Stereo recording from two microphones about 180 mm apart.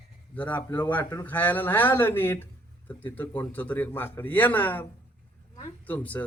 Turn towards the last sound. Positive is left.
turn(degrees=10)  # may be behind; listen again after turning